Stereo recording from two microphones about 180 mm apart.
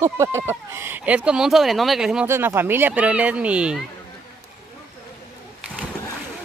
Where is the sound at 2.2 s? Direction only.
15° right (ahead or behind).